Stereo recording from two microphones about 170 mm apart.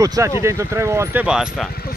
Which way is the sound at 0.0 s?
20° right (ahead or behind).